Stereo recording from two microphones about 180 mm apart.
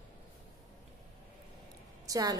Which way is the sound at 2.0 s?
20° right (ahead or behind).